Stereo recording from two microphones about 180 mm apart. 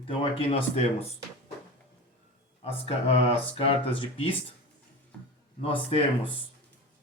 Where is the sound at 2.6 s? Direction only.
35° left (ahead or behind).